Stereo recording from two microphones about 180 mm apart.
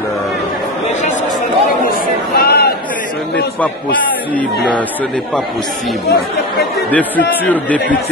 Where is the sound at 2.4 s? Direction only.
60° left (ahead or behind).